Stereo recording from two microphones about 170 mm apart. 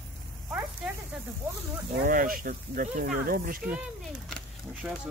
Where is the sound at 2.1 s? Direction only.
55° right (ahead or behind).